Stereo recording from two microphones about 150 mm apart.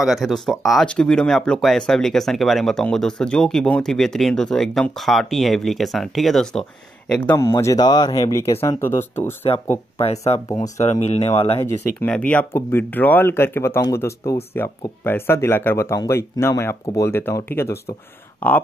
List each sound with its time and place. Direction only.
0.0 s speech: centre (ahead or behind); by 9.3 s 15° left (ahead or behind)
9.4 s speech: 45° left (ahead or behind)
12.3 s speech: 10° left (ahead or behind)